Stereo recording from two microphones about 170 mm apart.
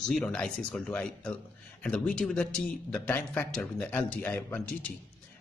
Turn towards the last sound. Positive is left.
turn(degrees=10)  # may be behind; listen again after turning